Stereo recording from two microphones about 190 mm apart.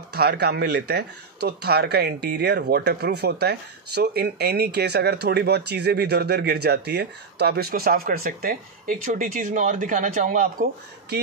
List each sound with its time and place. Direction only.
0.1 s speech: 55° right (ahead or behind)